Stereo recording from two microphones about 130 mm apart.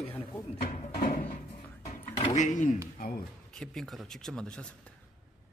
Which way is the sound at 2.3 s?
70° left (ahead or behind).